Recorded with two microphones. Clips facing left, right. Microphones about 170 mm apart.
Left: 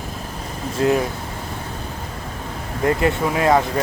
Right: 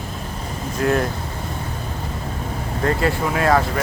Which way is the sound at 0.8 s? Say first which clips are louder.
Left 2 dB; 25° left (ahead or behind).